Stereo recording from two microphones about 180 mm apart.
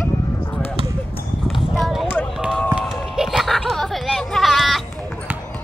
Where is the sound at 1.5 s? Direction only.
Centre (ahead or behind).